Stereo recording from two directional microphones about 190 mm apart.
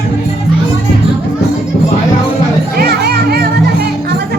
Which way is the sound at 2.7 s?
55° right (ahead or behind).